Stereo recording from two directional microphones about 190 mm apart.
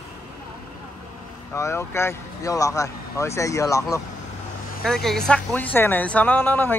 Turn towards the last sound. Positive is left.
turn(degrees=10)  # may be behind; listen again after turning